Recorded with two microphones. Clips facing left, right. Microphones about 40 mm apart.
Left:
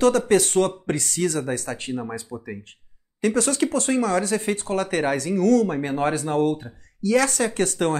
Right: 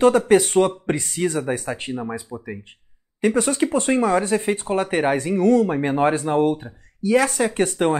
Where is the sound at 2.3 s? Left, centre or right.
Centre.